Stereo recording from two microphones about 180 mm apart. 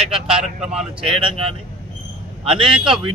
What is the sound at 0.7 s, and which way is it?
Speech, 30° right (ahead or behind).